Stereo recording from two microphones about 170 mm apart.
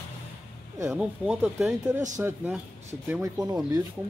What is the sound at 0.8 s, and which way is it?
Speech, 5° right (ahead or behind).